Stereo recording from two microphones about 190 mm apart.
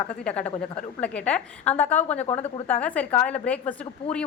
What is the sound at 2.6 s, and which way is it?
A woman's voice, 10° left (ahead or behind).